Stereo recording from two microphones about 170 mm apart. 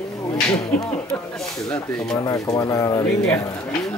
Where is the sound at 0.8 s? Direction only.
5° left (ahead or behind).